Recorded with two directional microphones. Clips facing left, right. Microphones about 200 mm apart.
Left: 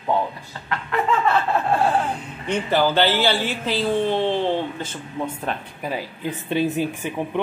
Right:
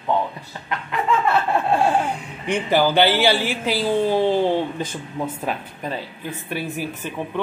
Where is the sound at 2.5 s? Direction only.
15° right (ahead or behind).